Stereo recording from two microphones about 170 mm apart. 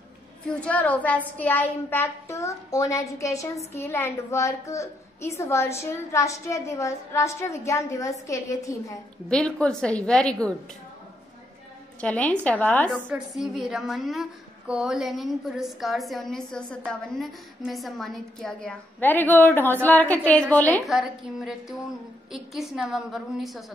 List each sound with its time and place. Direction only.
0.6 s a child's voice: 10° left (ahead or behind)
9.3 s a woman's voice: 5° left (ahead or behind)
12.0 s a child's voice: 5° left (ahead or behind)
12.9 s a woman's voice: 5° right (ahead or behind)